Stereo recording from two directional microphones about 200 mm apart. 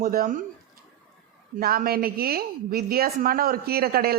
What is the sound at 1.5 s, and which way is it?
A woman's voice, 45° right (ahead or behind).